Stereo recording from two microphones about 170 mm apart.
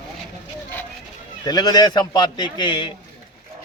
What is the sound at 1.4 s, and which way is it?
Speech, 25° left (ahead or behind).